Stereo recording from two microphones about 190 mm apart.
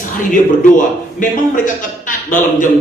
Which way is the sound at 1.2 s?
45° left (ahead or behind).